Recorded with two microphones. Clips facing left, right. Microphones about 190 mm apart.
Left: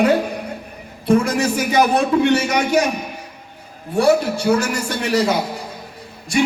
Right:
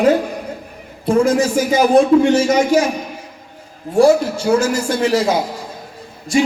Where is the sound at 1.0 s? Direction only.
65° left (ahead or behind).